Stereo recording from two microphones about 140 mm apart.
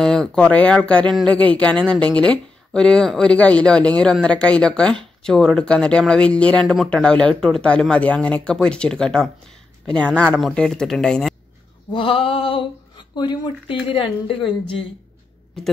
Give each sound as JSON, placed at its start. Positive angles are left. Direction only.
{"t": 0.0, "sound": "speech", "side_deg": 5}
{"t": 11.9, "sound": "speech", "side_deg": 40}